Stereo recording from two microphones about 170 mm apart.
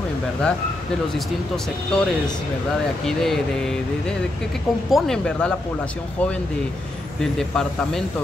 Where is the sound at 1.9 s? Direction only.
5° left (ahead or behind).